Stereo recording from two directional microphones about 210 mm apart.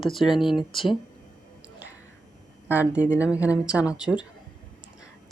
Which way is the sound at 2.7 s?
5° right (ahead or behind).